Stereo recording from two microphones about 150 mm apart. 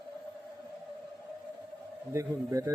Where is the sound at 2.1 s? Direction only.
20° right (ahead or behind).